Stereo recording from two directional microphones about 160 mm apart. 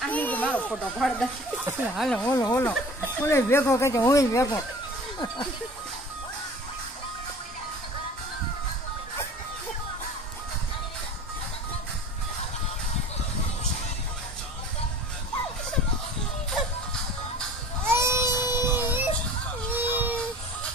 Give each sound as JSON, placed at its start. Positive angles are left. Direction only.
{"t": 0.0, "sound": "speech", "side_deg": 10}
{"t": 2.3, "sound": "speech", "side_deg": 20}
{"t": 17.8, "sound": "baby cry", "side_deg": -15}